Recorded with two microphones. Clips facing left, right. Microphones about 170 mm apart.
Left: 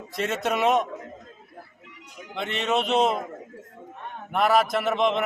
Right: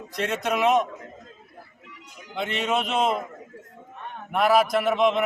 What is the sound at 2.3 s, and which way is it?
Speech, centre (ahead or behind).